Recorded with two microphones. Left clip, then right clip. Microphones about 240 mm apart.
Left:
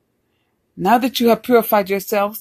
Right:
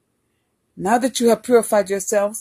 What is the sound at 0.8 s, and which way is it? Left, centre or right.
A woman's voice, centre.